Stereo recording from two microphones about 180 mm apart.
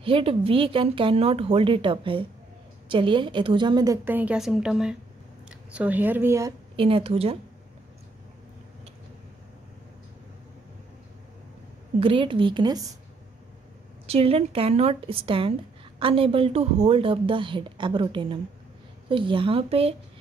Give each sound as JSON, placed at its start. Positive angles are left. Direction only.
{"t": 0.0, "sound": "a woman's voice", "side_deg": -30}
{"t": 6.8, "sound": "a woman's voice", "side_deg": -30}
{"t": 12.0, "sound": "a woman's voice", "side_deg": -30}
{"t": 14.0, "sound": "a woman's voice", "side_deg": -35}